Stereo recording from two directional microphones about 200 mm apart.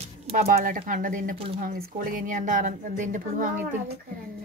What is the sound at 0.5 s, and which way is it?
Speech, 45° right (ahead or behind).